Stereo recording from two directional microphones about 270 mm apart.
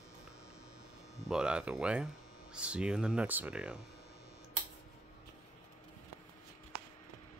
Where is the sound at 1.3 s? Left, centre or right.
Centre.